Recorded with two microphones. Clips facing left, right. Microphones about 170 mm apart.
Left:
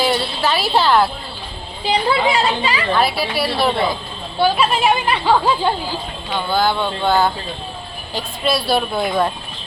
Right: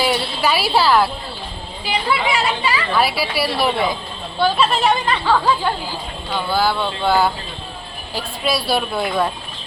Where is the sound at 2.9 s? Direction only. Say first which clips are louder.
Left 1 dB; 5° right (ahead or behind).